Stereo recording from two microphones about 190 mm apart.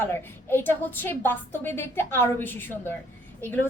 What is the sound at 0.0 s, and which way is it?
A woman's voice, 10° left (ahead or behind).